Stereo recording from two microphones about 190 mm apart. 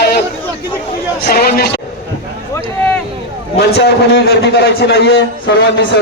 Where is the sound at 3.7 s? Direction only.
60° left (ahead or behind).